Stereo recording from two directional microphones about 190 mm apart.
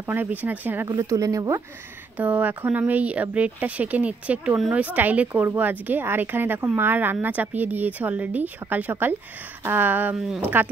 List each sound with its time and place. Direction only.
0.0 s speech: 10° right (ahead or behind)